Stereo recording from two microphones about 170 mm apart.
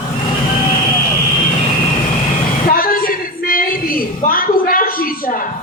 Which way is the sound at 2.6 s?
60° left (ahead or behind).